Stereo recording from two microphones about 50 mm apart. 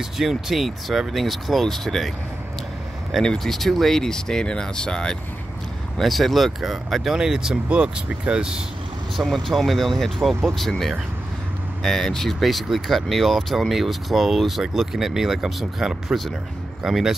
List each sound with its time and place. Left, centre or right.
0.2 s speech: centre
5.9 s speech: centre
9.1 s speech: centre